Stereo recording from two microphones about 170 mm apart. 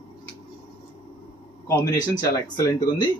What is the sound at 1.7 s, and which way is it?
Speech, 25° left (ahead or behind).